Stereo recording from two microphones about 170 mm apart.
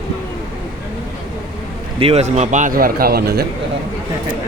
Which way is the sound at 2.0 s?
40° right (ahead or behind).